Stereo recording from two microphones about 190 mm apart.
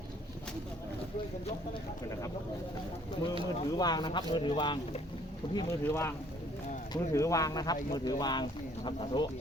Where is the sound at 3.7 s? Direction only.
20° left (ahead or behind).